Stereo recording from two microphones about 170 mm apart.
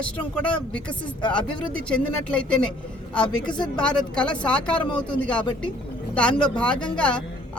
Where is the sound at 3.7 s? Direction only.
5° left (ahead or behind).